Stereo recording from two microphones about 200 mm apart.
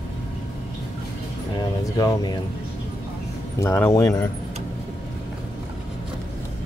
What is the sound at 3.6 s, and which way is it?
Speech, 15° left (ahead or behind).